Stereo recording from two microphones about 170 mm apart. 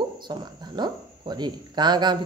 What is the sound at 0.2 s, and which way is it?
Speech, 25° right (ahead or behind).